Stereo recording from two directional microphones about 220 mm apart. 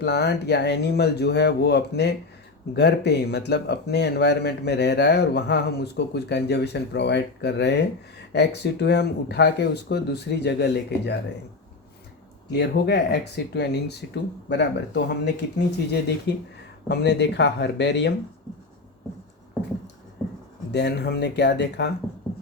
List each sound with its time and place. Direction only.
0.0 s speech: 50° left (ahead or behind)
12.5 s speech: 50° left (ahead or behind)
20.7 s speech: 50° left (ahead or behind)